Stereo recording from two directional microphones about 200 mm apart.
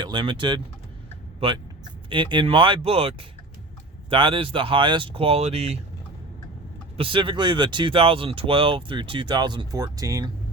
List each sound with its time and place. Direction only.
0.0 s speech: 25° right (ahead or behind)
2.0 s speech: 25° right (ahead or behind)
6.9 s speech: 25° right (ahead or behind)